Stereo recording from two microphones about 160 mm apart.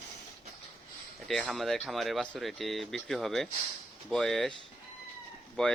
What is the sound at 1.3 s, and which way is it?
Speech, centre (ahead or behind).